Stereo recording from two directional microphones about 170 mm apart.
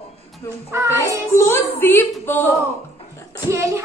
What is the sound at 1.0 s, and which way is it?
A woman's voice, 15° left (ahead or behind).